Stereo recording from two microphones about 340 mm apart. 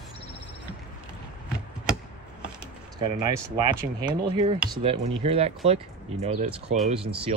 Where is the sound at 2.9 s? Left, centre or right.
Centre.